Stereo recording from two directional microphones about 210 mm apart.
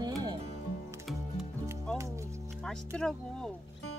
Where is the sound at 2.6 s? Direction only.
5° left (ahead or behind).